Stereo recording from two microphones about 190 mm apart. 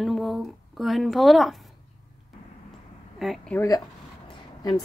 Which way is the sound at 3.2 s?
Centre (ahead or behind).